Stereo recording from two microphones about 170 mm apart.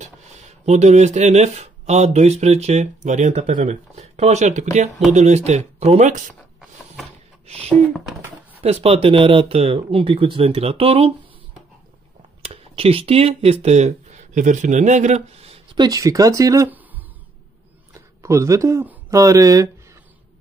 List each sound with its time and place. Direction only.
0.0 s speech: 40° right (ahead or behind)
7.4 s speech: 35° right (ahead or behind)
12.4 s speech: 35° right (ahead or behind)
15.8 s speech: 20° right (ahead or behind)
18.2 s speech: 15° right (ahead or behind)